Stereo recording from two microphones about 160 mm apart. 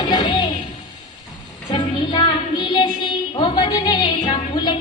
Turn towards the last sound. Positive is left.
turn(degrees=30)  # may be behind; listen again after turning